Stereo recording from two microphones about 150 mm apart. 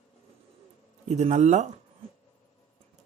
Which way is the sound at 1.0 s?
50° right (ahead or behind).